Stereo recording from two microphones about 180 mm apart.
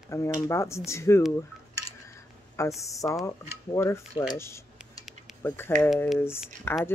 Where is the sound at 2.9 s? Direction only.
20° left (ahead or behind).